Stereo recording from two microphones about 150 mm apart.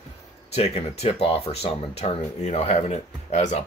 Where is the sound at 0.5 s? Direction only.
45° left (ahead or behind).